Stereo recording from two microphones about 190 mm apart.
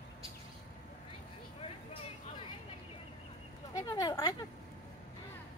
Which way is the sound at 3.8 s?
20° left (ahead or behind).